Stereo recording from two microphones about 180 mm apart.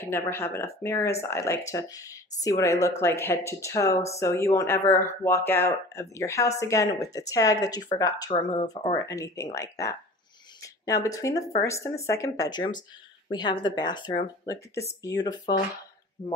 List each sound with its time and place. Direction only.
0.0 s speech: 15° left (ahead or behind)